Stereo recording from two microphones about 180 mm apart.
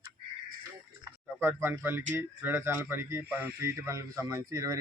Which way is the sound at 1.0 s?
15° right (ahead or behind).